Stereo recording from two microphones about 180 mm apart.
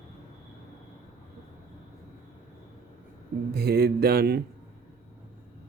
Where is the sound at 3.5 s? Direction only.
60° right (ahead or behind).